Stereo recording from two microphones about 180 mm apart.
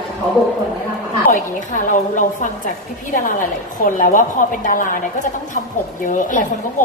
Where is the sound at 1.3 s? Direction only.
45° left (ahead or behind).